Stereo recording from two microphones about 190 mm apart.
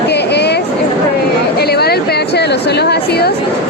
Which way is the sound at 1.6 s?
55° left (ahead or behind).